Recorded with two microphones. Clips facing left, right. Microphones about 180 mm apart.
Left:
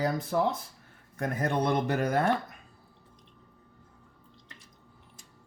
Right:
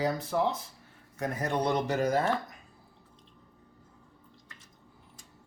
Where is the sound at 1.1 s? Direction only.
55° left (ahead or behind).